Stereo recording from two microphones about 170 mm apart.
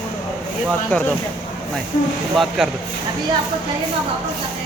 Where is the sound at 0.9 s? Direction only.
10° left (ahead or behind).